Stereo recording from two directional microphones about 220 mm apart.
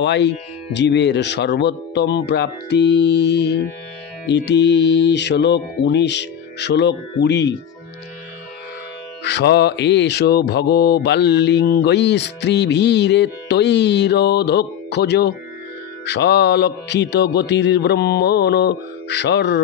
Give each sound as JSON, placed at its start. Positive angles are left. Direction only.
{"t": 0.0, "sound": "music", "side_deg": 50}
{"t": 9.2, "sound": "music", "side_deg": 50}